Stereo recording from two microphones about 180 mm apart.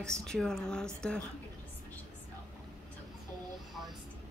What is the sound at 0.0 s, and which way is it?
A woman's voice, 5° left (ahead or behind).